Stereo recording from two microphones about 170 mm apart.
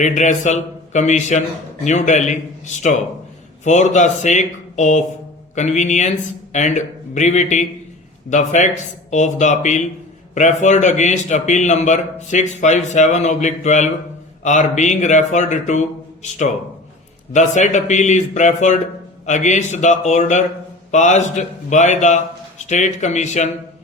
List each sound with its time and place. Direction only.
0.0 s a man's voice: 45° left (ahead or behind)
3.6 s a man's voice: 45° left (ahead or behind)
17.3 s a man's voice: 45° left (ahead or behind)